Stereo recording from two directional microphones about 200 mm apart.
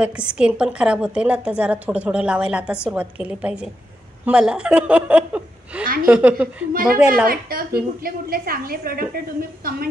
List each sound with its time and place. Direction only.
0.0 s a woman's voice: 5° right (ahead or behind)
6.7 s a woman's voice: 45° right (ahead or behind)